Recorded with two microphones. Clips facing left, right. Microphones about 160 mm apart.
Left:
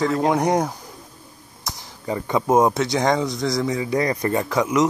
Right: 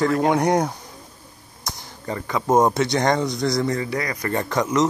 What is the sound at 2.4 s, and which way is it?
Speech, 5° left (ahead or behind).